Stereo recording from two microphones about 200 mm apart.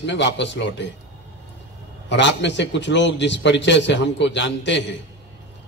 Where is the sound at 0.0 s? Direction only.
60° left (ahead or behind).